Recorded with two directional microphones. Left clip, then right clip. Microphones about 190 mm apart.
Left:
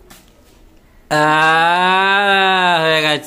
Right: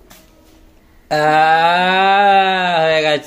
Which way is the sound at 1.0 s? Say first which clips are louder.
Even; 45° left (ahead or behind).